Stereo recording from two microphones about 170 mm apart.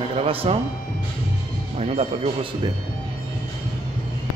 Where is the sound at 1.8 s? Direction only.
40° right (ahead or behind).